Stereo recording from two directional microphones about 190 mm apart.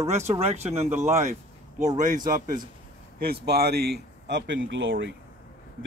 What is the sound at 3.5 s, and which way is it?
Speech, 55° right (ahead or behind).